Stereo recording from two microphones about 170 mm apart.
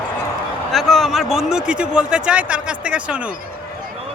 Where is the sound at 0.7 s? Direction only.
Centre (ahead or behind).